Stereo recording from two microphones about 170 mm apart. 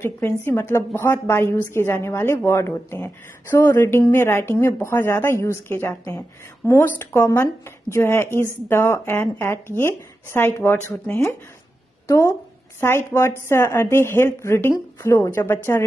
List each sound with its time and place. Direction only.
0.0 s a woman's voice: 15° left (ahead or behind)
12.8 s a woman's voice: 15° left (ahead or behind)